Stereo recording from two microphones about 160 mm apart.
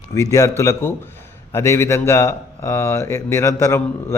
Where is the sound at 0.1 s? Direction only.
20° left (ahead or behind).